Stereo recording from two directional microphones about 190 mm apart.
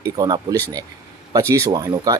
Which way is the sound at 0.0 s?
20° right (ahead or behind).